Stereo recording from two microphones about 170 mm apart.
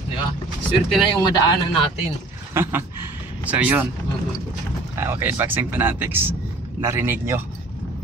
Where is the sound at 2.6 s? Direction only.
15° right (ahead or behind).